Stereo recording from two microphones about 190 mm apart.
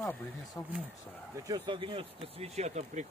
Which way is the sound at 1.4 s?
25° right (ahead or behind).